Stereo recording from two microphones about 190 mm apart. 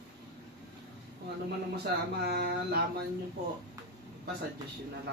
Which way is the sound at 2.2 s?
60° right (ahead or behind).